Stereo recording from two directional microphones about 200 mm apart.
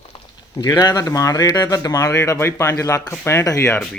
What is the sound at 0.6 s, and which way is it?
Speech, 20° left (ahead or behind).